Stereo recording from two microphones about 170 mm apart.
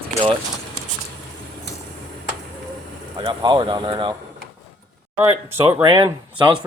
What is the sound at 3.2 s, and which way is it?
Speech, 25° right (ahead or behind).